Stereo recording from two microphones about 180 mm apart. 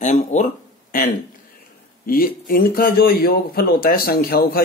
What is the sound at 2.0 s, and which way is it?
Speech, 55° left (ahead or behind).